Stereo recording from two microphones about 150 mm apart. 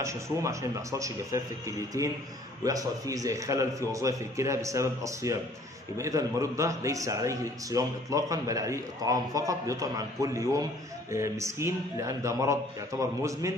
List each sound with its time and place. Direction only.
0.0 s a man's voice: 20° right (ahead or behind)